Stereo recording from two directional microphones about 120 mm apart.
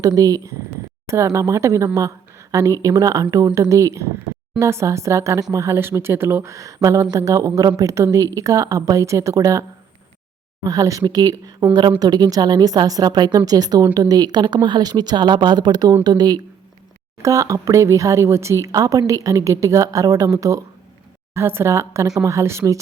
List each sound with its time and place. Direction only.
0.0 s speech: 30° right (ahead or behind)
10.7 s a woman's voice: 30° right (ahead or behind)